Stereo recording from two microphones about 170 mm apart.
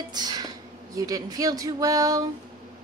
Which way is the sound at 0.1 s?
25° right (ahead or behind).